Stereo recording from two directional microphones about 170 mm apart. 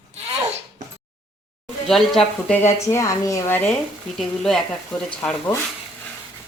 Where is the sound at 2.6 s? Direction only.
15° left (ahead or behind).